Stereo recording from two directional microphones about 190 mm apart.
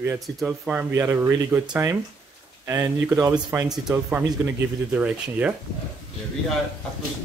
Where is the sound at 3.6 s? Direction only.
Centre (ahead or behind).